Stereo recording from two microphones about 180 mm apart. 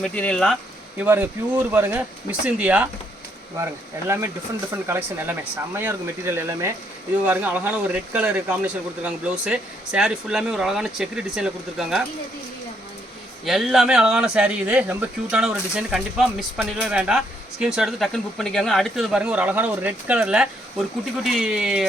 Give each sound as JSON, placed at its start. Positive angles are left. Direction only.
{"t": 0.0, "sound": "speech", "side_deg": 5}
{"t": 0.9, "sound": "speech", "side_deg": -10}
{"t": 4.1, "sound": "speech", "side_deg": -15}
{"t": 13.4, "sound": "speech", "side_deg": 0}